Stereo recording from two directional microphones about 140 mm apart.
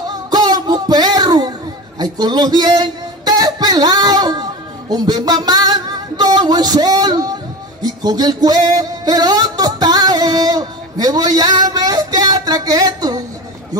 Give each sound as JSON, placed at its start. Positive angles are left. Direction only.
{"t": 0.1, "sound": "music", "side_deg": -30}
{"t": 2.0, "sound": "a man's voice", "side_deg": -30}
{"t": 7.8, "sound": "music", "side_deg": -30}